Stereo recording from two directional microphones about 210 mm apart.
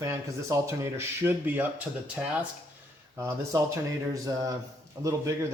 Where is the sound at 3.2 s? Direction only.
10° right (ahead or behind).